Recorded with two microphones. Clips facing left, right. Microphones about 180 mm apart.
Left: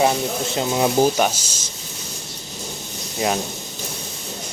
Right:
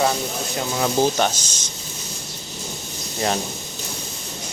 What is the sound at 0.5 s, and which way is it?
Speech, 20° left (ahead or behind).